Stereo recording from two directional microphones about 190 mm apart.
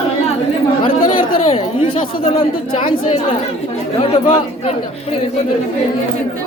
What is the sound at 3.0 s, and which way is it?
Speech, 30° left (ahead or behind).